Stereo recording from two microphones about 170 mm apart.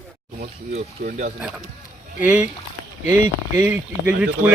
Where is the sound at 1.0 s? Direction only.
55° right (ahead or behind).